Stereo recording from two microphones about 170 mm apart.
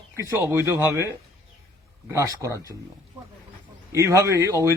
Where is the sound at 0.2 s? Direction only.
20° right (ahead or behind).